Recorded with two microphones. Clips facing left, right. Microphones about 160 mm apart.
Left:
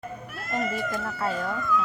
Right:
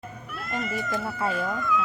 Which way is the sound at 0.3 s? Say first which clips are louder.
Left 2 dB; 45° left (ahead or behind).